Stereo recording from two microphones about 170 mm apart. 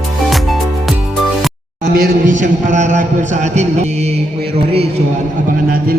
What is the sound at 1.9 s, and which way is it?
Speech, 60° right (ahead or behind).